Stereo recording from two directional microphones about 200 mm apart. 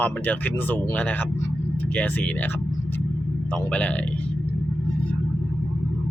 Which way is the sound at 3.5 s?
5° left (ahead or behind).